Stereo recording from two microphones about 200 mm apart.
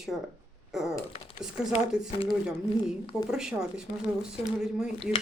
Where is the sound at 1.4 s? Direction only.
5° right (ahead or behind).